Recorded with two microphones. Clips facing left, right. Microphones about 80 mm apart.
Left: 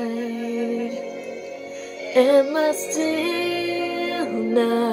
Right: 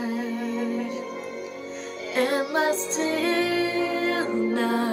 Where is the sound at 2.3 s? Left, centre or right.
Right.